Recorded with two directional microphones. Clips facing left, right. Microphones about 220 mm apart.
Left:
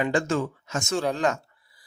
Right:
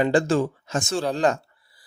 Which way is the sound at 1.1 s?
35° right (ahead or behind).